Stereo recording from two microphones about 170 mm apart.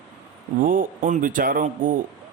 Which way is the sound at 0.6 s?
50° right (ahead or behind).